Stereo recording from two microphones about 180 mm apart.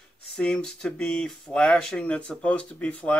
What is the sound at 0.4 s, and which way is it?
Speech, 5° left (ahead or behind).